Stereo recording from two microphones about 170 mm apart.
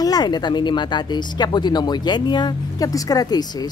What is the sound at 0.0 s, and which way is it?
Speech, 25° left (ahead or behind).